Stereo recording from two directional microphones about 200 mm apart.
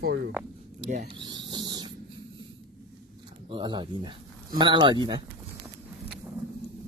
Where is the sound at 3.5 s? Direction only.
25° right (ahead or behind).